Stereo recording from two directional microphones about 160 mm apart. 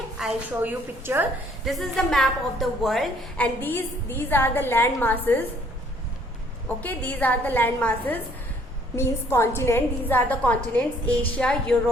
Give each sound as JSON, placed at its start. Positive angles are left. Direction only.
{"t": 0.2, "sound": "a woman's voice", "side_deg": -10}
{"t": 1.6, "sound": "a woman's voice", "side_deg": 0}
{"t": 6.8, "sound": "a woman's voice", "side_deg": 10}